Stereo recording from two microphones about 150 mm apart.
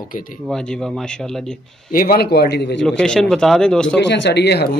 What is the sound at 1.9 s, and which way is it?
Speech, 75° left (ahead or behind).